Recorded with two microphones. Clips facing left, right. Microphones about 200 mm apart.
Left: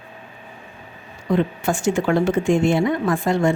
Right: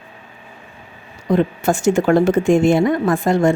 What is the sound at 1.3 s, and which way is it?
A woman's voice, 40° right (ahead or behind).